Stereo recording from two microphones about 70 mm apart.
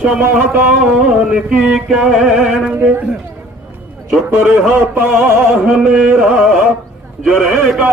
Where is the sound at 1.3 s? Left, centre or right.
Centre.